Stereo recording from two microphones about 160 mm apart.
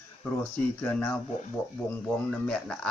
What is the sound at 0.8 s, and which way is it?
Speech, 10° left (ahead or behind).